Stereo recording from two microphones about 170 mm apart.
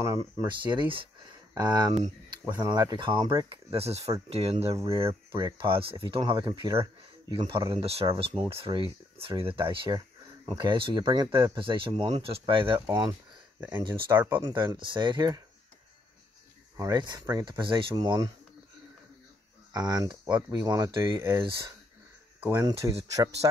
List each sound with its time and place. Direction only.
0.4 s speech: 25° right (ahead or behind)
13.6 s speech: 10° right (ahead or behind)
14.6 s speech: 30° right (ahead or behind)
16.7 s speech: 20° right (ahead or behind)
19.7 s speech: 20° right (ahead or behind)